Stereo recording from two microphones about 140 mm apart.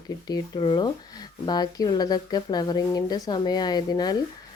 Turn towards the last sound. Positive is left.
turn(degrees=30)  # may be behind; listen again after turning